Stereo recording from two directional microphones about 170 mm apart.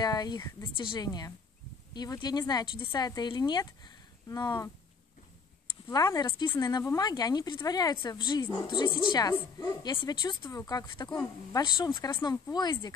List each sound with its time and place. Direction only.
0.0 s speech: 25° left (ahead or behind)
5.9 s speech: 20° left (ahead or behind)